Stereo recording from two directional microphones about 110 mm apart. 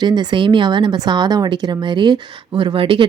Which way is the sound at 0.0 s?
40° right (ahead or behind).